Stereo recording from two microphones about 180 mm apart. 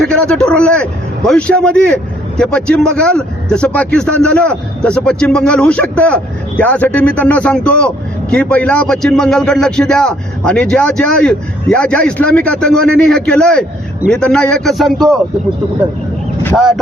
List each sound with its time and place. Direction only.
0.0 s speech: 5° left (ahead or behind)
16.6 s speech: centre (ahead or behind)